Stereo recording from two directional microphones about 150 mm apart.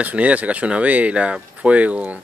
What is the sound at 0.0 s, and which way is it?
Speech, 10° right (ahead or behind).